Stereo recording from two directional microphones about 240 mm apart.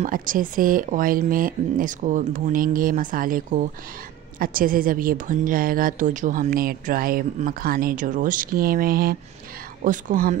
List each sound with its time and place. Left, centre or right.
0.0 s a woman's voice: right